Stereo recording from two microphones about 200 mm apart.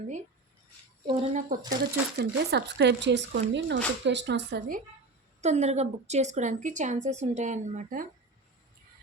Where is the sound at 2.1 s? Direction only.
55° right (ahead or behind).